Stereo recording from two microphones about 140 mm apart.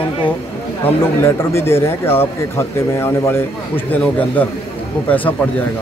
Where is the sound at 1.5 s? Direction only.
15° left (ahead or behind).